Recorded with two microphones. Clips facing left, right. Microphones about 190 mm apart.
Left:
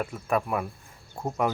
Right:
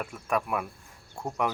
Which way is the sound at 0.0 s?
35° left (ahead or behind).